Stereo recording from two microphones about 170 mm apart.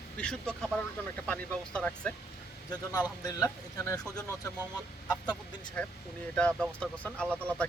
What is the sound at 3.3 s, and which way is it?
Speech, 20° left (ahead or behind).